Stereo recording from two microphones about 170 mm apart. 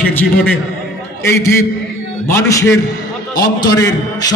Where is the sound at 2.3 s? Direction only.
15° left (ahead or behind).